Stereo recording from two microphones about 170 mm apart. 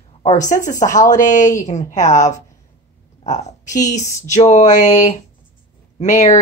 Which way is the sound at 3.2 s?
45° left (ahead or behind).